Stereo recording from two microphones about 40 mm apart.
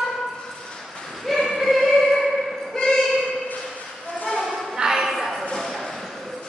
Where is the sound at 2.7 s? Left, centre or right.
Centre.